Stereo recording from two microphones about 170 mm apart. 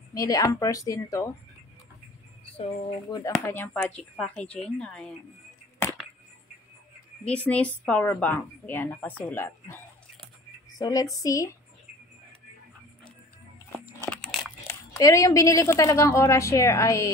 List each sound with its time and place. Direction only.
0.1 s a woman's voice: 20° left (ahead or behind)
2.4 s a sound: 35° left (ahead or behind)
3.4 s speech: 10° left (ahead or behind)
7.2 s a woman's voice: 10° left (ahead or behind)
10.8 s a woman's voice: 20° left (ahead or behind)
15.0 s a woman's voice: 20° left (ahead or behind)